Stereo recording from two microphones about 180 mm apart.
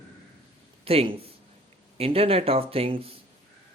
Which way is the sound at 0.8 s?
35° right (ahead or behind).